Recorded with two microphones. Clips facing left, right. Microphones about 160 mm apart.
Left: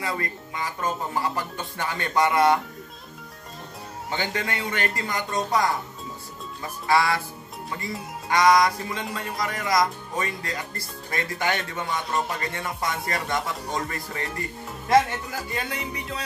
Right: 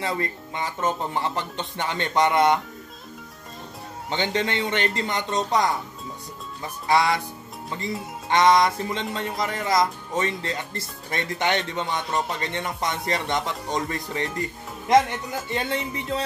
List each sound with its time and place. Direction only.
0.0 s speech: 25° right (ahead or behind)
4.1 s speech: 20° right (ahead or behind)
6.9 s speech: 20° right (ahead or behind)
8.3 s speech: 25° right (ahead or behind)